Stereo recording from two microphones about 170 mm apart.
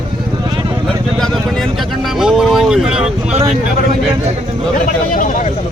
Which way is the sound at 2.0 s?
Centre (ahead or behind).